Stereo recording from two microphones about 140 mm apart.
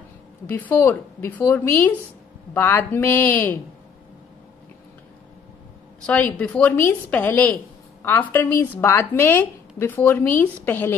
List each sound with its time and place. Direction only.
0.6 s speech: 15° left (ahead or behind)
6.0 s speech: 10° left (ahead or behind)